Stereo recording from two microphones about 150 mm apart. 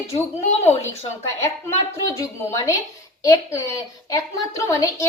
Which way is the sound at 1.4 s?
20° left (ahead or behind).